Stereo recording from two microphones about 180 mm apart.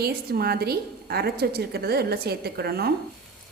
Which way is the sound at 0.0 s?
60° right (ahead or behind).